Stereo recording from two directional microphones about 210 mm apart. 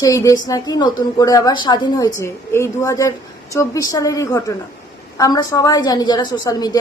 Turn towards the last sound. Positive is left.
turn(degrees=15)  # may be behind; listen again after turning